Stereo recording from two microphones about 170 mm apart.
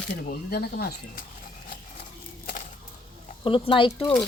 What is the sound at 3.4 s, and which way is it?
Speech, 30° left (ahead or behind).